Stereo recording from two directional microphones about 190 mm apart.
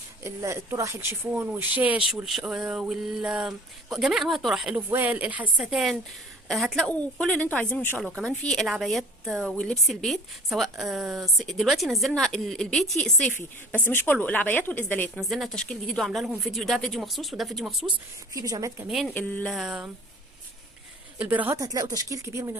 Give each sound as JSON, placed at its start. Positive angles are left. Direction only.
{"t": 0.2, "sound": "a woman's voice", "side_deg": -15}
{"t": 17.9, "sound": "a woman's voice", "side_deg": -20}
{"t": 19.1, "sound": "a woman's voice", "side_deg": 5}
{"t": 21.2, "sound": "speech", "side_deg": -10}